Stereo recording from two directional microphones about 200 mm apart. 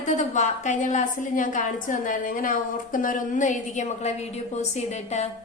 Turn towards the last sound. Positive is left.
turn(degrees=35)  # may be behind; listen again after turning